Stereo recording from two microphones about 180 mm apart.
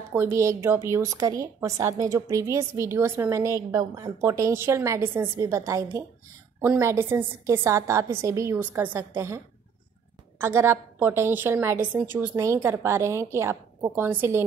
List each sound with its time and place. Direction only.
0.1 s a woman's voice: 15° right (ahead or behind)
10.4 s a woman's voice: 15° right (ahead or behind)